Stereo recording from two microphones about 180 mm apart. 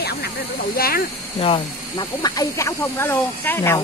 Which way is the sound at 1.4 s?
30° left (ahead or behind).